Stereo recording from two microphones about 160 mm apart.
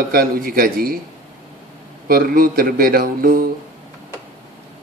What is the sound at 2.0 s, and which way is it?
A man's voice, 65° right (ahead or behind).